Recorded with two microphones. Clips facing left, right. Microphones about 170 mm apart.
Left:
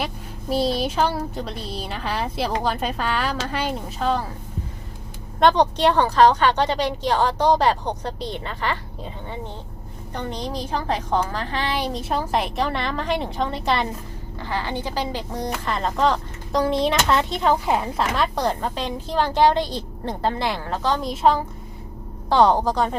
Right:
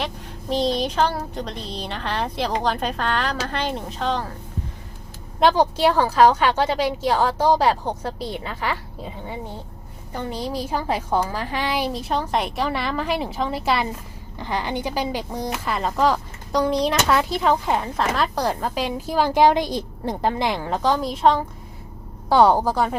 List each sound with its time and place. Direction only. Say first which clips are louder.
0.5 s a woman's voice: even; 5° left (ahead or behind)
5.4 s a woman's voice: even; 5° right (ahead or behind)
14.3 s speech: right 1 dB; 15° right (ahead or behind)
21.0 s a woman's voice: right 1 dB; centre (ahead or behind)
22.3 s speech: right 1 dB; 10° right (ahead or behind)